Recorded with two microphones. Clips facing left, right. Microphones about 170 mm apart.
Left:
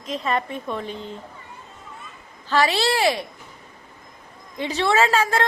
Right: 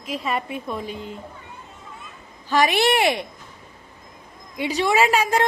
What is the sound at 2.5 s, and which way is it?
Speech, 15° right (ahead or behind).